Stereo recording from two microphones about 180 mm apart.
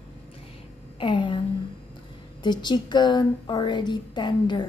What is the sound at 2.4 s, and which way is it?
Speech, 25° left (ahead or behind).